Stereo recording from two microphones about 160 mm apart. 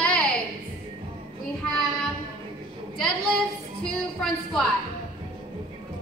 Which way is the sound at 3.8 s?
5° left (ahead or behind).